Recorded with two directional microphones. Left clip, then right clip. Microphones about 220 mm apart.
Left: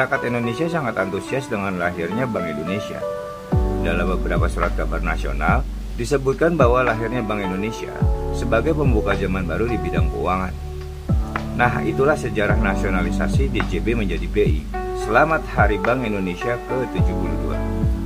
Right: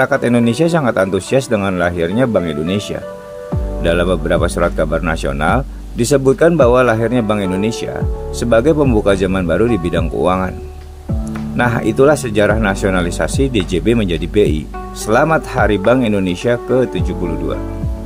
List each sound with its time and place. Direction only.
0.0 s speech: 40° right (ahead or behind)
3.8 s speech: 40° right (ahead or behind)
11.5 s speech: 40° right (ahead or behind)